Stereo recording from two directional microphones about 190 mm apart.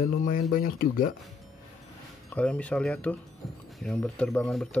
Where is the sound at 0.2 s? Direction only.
45° left (ahead or behind).